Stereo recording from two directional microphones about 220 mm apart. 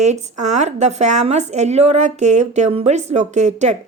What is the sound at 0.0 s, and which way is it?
A woman's voice, 30° right (ahead or behind).